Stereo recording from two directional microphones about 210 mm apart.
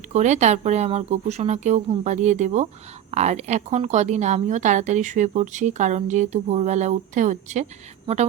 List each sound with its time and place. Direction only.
0.1 s a woman's voice: 35° right (ahead or behind)